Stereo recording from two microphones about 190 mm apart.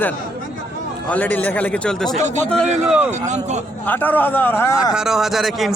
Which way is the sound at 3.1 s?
35° right (ahead or behind).